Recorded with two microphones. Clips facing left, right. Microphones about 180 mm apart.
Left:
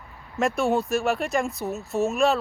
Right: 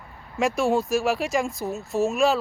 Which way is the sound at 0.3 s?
Centre (ahead or behind).